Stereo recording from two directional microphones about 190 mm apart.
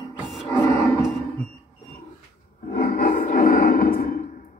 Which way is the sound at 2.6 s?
50° left (ahead or behind).